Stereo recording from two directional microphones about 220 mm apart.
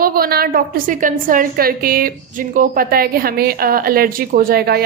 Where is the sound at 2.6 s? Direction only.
40° right (ahead or behind).